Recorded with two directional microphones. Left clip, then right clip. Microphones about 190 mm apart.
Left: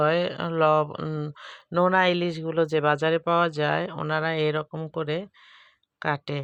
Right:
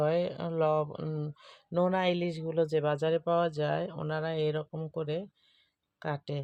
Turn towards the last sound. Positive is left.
turn(degrees=20)  # may be behind; listen again after turning